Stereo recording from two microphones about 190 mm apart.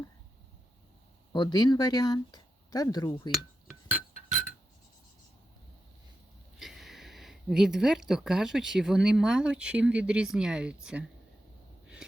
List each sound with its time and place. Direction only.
1.3 s speech: 25° left (ahead or behind)
3.3 s glass: centre (ahead or behind)
6.6 s speech: centre (ahead or behind)